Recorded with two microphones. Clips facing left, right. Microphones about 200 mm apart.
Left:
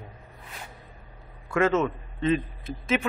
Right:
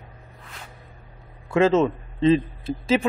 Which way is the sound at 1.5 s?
30° right (ahead or behind).